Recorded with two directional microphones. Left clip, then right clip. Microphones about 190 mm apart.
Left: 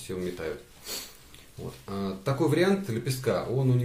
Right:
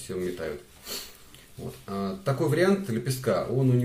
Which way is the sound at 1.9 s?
35° left (ahead or behind).